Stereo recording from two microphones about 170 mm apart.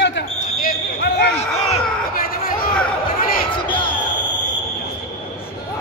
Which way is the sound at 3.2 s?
55° left (ahead or behind).